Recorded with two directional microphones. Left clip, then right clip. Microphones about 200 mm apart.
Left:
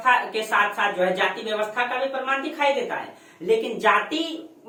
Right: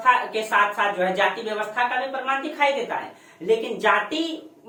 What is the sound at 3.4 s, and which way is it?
Speech, 5° left (ahead or behind).